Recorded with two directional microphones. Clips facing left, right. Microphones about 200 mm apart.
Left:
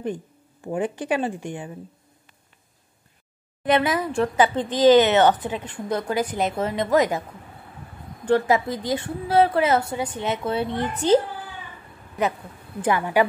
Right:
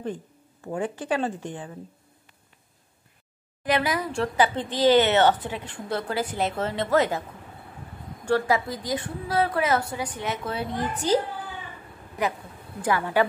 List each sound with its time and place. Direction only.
0.0 s speech: 15° left (ahead or behind)
3.6 s speech: 25° left (ahead or behind)
8.3 s a woman's voice: 20° left (ahead or behind)
12.8 s speech: 15° left (ahead or behind)